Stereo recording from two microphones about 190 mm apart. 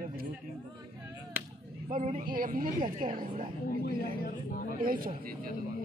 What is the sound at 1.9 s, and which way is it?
Speech, 40° right (ahead or behind).